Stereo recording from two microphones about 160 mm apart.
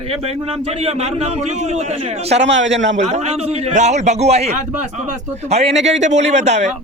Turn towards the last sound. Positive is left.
turn(degrees=-45)  # may be behind; listen again after turning